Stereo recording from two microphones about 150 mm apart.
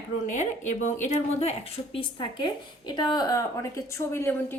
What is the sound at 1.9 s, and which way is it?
A woman's voice, 35° left (ahead or behind).